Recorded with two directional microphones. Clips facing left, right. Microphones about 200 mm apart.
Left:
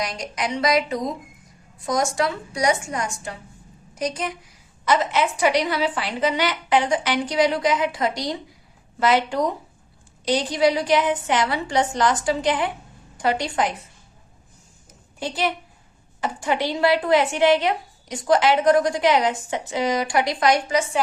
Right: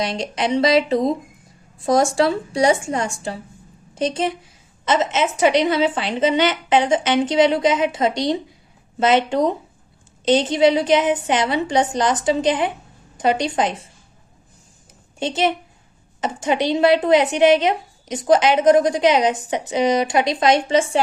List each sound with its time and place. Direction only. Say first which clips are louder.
0.0 s a woman's voice: right 5 dB; 25° right (ahead or behind)
15.2 s speech: right 5 dB; 25° right (ahead or behind)